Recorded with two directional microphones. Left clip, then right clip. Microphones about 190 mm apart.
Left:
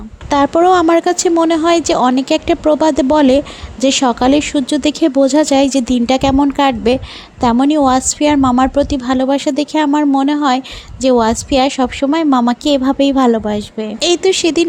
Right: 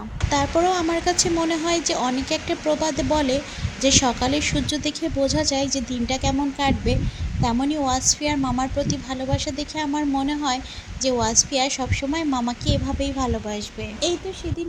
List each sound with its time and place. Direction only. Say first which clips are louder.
0.3 s speech: left 10 dB; 50° left (ahead or behind)